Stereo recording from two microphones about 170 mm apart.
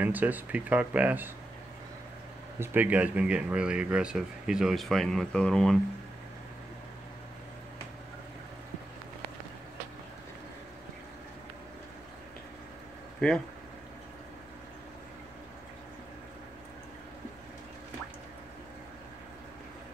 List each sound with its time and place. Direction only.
0.0 s speech: 10° right (ahead or behind)
2.6 s speech: 10° right (ahead or behind)
13.2 s speech: 5° left (ahead or behind)